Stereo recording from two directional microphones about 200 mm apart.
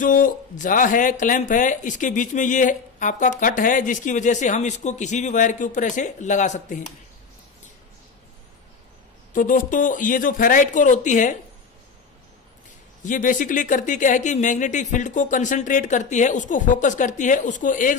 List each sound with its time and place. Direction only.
0.0 s speech: 40° left (ahead or behind)
9.3 s speech: 40° left (ahead or behind)
13.0 s speech: 40° left (ahead or behind)